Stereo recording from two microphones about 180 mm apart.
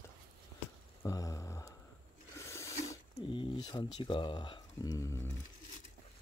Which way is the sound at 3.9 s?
25° left (ahead or behind).